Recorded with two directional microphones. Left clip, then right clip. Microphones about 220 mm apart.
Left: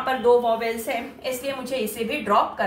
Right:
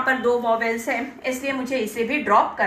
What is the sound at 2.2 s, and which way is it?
Speech, 10° right (ahead or behind).